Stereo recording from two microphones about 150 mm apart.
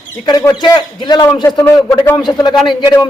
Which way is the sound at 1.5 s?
15° left (ahead or behind).